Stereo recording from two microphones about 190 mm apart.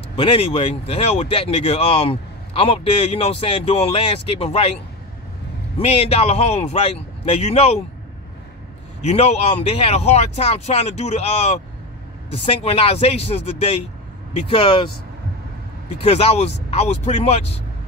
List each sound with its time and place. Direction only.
0.1 s speech: 25° left (ahead or behind)
5.8 s speech: 30° left (ahead or behind)
9.0 s speech: 35° left (ahead or behind)
15.9 s speech: 35° left (ahead or behind)